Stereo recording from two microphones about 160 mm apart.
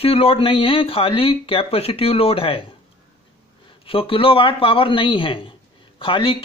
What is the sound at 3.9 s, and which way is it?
A man's voice, 35° left (ahead or behind).